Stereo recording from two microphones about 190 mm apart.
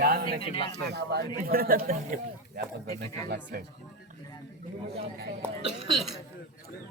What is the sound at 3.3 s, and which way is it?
Speech, 50° right (ahead or behind).